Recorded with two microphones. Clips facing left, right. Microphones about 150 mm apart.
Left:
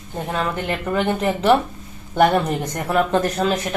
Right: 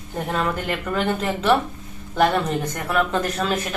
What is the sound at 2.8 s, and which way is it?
Speech, 30° left (ahead or behind).